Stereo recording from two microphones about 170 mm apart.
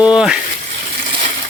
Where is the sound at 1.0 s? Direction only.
30° right (ahead or behind).